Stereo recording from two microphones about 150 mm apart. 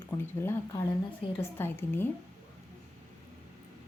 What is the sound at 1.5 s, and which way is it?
Speech, 15° left (ahead or behind).